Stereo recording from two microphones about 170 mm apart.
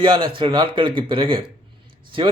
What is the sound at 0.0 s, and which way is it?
A man's voice, 30° right (ahead or behind).